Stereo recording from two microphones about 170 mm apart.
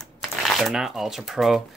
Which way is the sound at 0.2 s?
Centre (ahead or behind).